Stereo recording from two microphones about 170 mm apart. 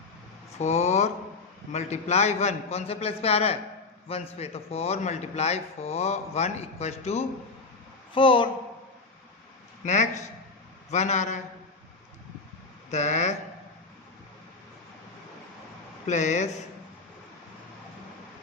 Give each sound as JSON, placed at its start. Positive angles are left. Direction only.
{"t": 0.6, "sound": "a man's voice", "side_deg": 40}
{"t": 8.1, "sound": "speech", "side_deg": 30}
{"t": 9.8, "sound": "a man's voice", "side_deg": 45}
{"t": 12.9, "sound": "a man's voice", "side_deg": 45}
{"t": 16.0, "sound": "a man's voice", "side_deg": 45}